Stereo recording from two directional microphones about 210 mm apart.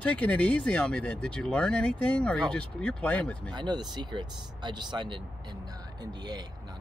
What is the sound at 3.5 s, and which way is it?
Speech, 20° right (ahead or behind).